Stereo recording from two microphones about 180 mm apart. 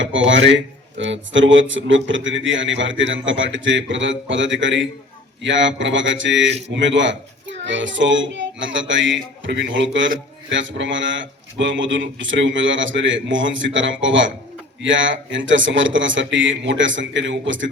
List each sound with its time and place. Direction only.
0.0 s speech: 90° right